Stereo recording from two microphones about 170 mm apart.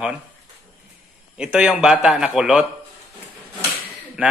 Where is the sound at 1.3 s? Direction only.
5° right (ahead or behind).